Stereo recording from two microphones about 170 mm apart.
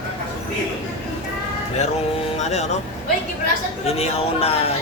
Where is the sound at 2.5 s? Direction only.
40° left (ahead or behind).